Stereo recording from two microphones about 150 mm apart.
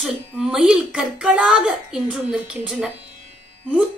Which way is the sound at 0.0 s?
5° right (ahead or behind).